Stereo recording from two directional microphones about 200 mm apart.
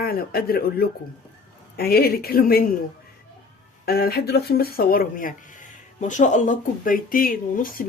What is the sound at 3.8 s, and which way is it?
Speech, 50° left (ahead or behind).